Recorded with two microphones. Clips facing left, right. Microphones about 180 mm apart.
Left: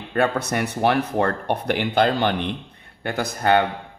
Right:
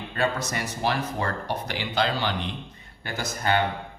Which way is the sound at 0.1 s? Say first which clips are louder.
Left 6 dB; 60° left (ahead or behind).